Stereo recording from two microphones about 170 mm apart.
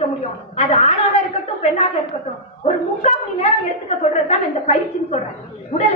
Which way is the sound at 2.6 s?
40° left (ahead or behind).